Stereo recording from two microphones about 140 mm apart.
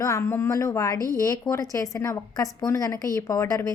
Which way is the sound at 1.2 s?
25° left (ahead or behind).